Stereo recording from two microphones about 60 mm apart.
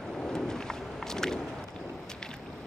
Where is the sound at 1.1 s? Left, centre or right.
Centre.